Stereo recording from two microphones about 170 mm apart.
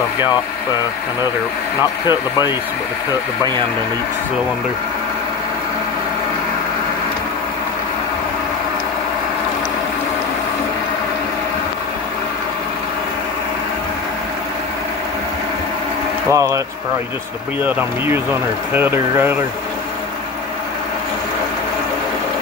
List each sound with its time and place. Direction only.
2.0 s speech: 25° left (ahead or behind)
16.3 s speech: 20° right (ahead or behind)
17.6 s speech: 10° right (ahead or behind)